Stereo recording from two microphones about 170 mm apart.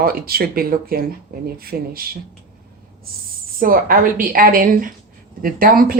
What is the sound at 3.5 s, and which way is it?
Speech, 55° right (ahead or behind).